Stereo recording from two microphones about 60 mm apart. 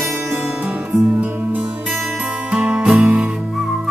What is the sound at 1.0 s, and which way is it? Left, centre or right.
Music, right.